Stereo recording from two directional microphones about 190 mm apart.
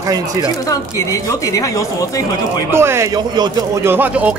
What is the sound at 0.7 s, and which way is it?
Speech, 15° left (ahead or behind).